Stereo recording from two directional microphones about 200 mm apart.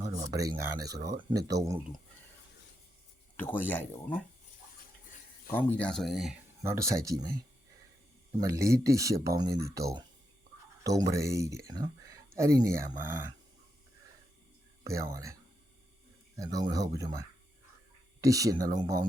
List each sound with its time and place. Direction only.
0.2 s speech: 15° right (ahead or behind)
3.3 s speech: 10° left (ahead or behind)
5.5 s speech: 10° left (ahead or behind)
6.6 s speech: 15° right (ahead or behind)
8.4 s speech: 15° right (ahead or behind)
14.8 s speech: 15° right (ahead or behind)